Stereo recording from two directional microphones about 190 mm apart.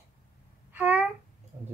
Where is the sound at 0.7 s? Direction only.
10° right (ahead or behind).